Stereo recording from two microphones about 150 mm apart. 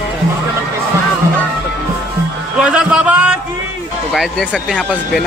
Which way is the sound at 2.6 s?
5° right (ahead or behind).